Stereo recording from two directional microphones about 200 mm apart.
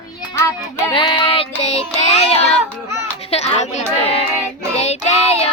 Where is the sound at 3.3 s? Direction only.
35° left (ahead or behind).